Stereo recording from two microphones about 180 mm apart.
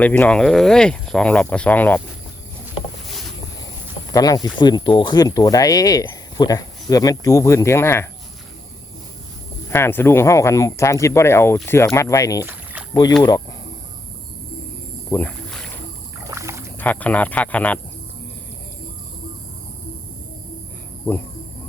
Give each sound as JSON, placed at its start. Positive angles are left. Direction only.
{"t": 0.0, "sound": "speech", "side_deg": 10}
{"t": 4.1, "sound": "speech", "side_deg": 20}
{"t": 9.6, "sound": "speech", "side_deg": 15}
{"t": 15.1, "sound": "rowboat", "side_deg": 10}
{"t": 16.2, "sound": "rowboat", "side_deg": -15}
{"t": 16.7, "sound": "speech", "side_deg": 10}